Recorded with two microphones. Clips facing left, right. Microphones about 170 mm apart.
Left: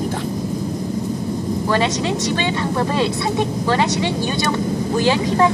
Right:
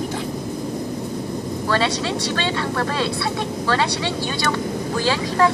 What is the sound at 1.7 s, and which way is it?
Speech, 15° left (ahead or behind).